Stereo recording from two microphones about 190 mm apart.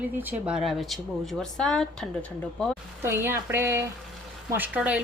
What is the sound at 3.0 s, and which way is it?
Speech, 10° right (ahead or behind).